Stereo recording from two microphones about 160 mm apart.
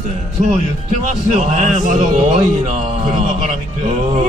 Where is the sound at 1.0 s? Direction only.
45° right (ahead or behind).